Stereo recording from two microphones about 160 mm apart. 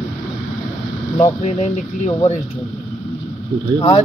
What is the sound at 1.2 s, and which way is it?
Speech, 45° left (ahead or behind).